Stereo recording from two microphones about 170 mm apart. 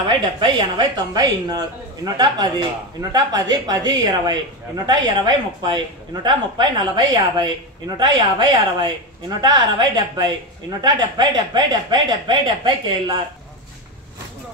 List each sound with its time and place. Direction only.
0.4 s a woman's voice: 30° right (ahead or behind)